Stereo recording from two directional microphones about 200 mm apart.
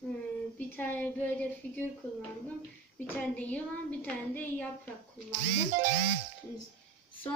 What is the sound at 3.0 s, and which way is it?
A woman's voice, 10° left (ahead or behind).